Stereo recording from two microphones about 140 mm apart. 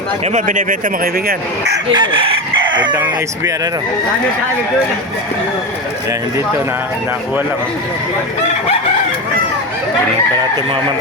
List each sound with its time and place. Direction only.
0.3 s speech: 60° right (ahead or behind); by 1.4 s 90° right
1.9 s chicken: 35° right (ahead or behind)